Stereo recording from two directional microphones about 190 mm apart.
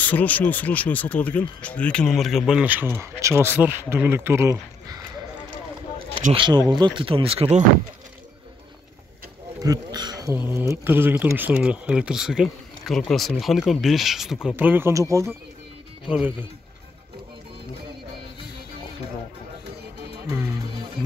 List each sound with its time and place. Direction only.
0.0 s speech: 10° left (ahead or behind); by 5.0 s 15° right (ahead or behind)
6.3 s speech: 25° right (ahead or behind)
9.6 s speech: 20° right (ahead or behind)
20.2 s music: 15° right (ahead or behind)